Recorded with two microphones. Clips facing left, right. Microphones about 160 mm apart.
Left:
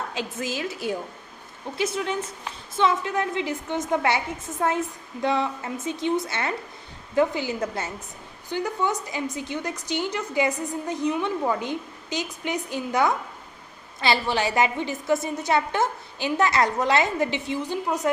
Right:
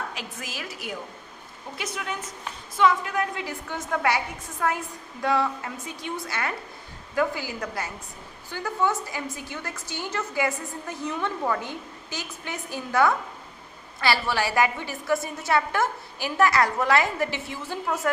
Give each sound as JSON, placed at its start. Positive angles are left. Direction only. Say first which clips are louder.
{"t": 0.1, "sound": "a woman's voice", "louder": "left 7 dB", "side_deg": 25}